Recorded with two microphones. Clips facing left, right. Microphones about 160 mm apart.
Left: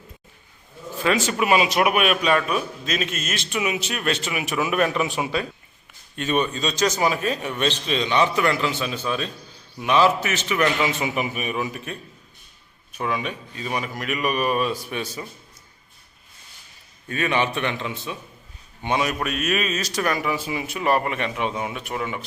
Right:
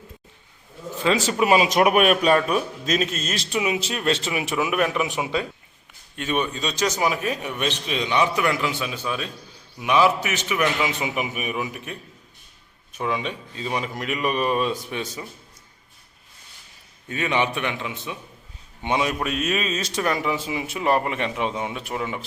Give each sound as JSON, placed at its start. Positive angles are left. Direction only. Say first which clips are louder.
{"t": 1.0, "sound": "a man's voice", "louder": "right 1 dB", "side_deg": -30}
{"t": 4.6, "sound": "a man's voice", "louder": "left 2 dB", "side_deg": -10}
{"t": 6.1, "sound": "a man's voice", "louder": "left 2 dB", "side_deg": -10}
{"t": 17.1, "sound": "a man's voice", "louder": "even", "side_deg": -15}